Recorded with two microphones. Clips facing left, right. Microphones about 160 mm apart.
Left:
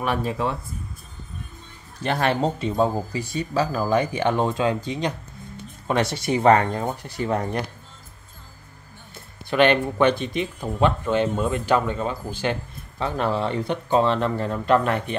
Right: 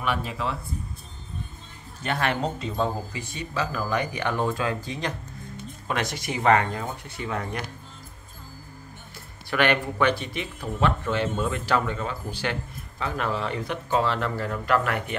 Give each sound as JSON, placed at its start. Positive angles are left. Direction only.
{"t": 0.0, "sound": "speech", "side_deg": 40}
{"t": 2.0, "sound": "speech", "side_deg": 35}
{"t": 9.5, "sound": "speech", "side_deg": 25}